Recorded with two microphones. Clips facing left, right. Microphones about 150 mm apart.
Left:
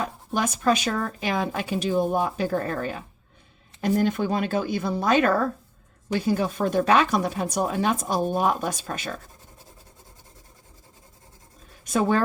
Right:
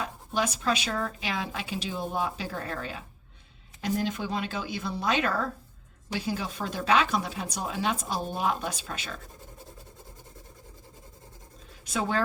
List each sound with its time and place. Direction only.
0.0 s speech: 50° left (ahead or behind)
11.9 s speech: 50° left (ahead or behind)